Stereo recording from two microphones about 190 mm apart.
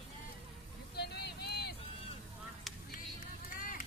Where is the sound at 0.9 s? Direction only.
60° left (ahead or behind).